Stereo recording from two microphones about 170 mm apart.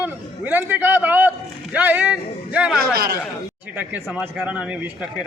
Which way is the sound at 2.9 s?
60° right (ahead or behind).